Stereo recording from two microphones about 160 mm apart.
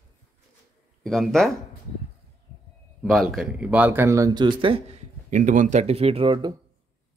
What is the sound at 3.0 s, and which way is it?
Speech, centre (ahead or behind).